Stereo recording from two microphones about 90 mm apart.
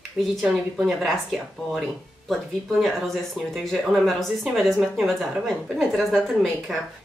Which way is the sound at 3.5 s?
Centre (ahead or behind).